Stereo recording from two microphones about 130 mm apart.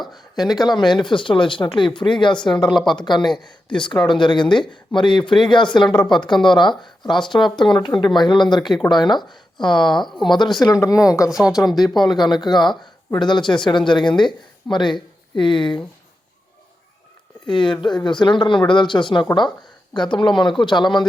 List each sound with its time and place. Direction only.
0.0 s speech: 30° left (ahead or behind)
10.7 s speech: 20° left (ahead or behind)
10.9 s speech: 5° right (ahead or behind)
12.0 s speech: 35° left (ahead or behind)
17.4 s speech: 35° left (ahead or behind)